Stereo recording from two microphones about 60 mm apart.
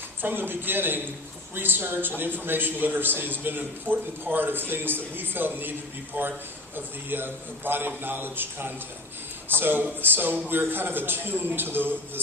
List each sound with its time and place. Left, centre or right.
0.2 s a man's voice: right